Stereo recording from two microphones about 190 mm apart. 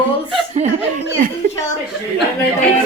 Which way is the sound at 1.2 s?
50° right (ahead or behind).